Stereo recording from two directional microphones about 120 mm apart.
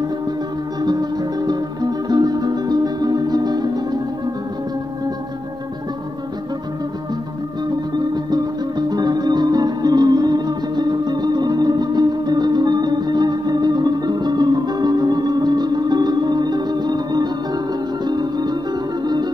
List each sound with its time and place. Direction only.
1.4 s music: 35° right (ahead or behind)
7.6 s music: 35° right (ahead or behind)